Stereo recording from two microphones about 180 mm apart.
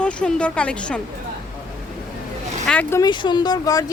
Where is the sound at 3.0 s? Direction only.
25° left (ahead or behind).